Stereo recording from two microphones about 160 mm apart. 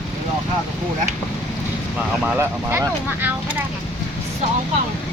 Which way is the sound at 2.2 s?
10° right (ahead or behind).